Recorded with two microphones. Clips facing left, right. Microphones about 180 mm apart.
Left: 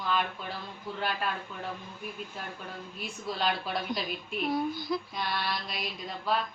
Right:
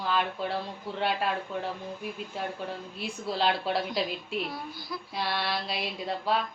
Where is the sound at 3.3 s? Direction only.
30° right (ahead or behind).